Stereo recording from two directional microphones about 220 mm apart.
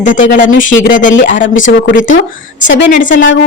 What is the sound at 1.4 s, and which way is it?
Speech, 60° left (ahead or behind).